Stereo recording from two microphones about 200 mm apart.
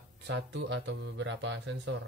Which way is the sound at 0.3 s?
65° right (ahead or behind).